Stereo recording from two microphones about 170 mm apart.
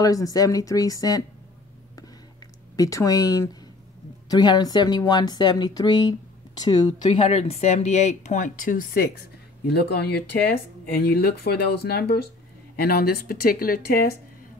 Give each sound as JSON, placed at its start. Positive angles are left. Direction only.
{"t": 0.0, "sound": "speech", "side_deg": 20}
{"t": 2.7, "sound": "speech", "side_deg": 20}
{"t": 7.2, "sound": "speech", "side_deg": 40}